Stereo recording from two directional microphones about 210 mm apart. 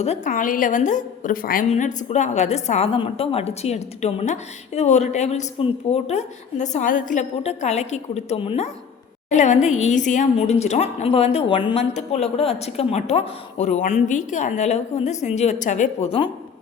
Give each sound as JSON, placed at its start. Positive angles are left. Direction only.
{"t": 0.0, "sound": "a woman's voice", "side_deg": 35}